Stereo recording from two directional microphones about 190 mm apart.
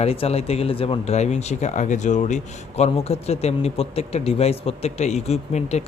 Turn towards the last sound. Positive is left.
turn(degrees=35)  # may be behind; listen again after turning